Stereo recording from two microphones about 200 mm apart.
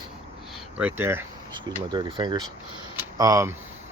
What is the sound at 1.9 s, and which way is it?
Speech, 20° right (ahead or behind).